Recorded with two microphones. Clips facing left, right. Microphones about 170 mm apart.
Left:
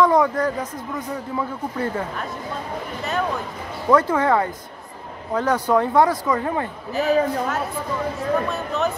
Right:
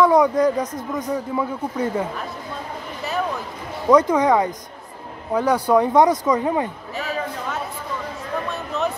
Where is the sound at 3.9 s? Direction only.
15° right (ahead or behind).